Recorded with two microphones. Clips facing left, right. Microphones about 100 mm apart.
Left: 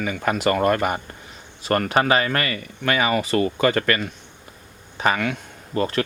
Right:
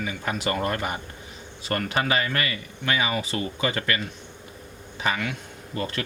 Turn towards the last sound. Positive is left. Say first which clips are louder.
# left 7 dB
turn(degrees=40)  # may be behind; listen again after turning